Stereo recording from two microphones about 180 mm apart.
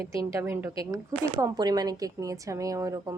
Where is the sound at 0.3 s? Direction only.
15° right (ahead or behind).